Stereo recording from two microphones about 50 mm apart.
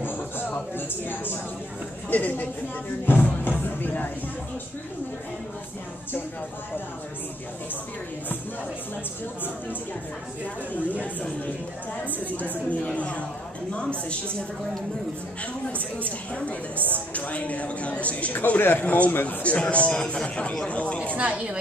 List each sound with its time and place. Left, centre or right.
0.0 s music: left
2.0 s speech: left
12.4 s speech: left
16.0 s speech: left
18.3 s speech: left
21.2 s a woman's voice: right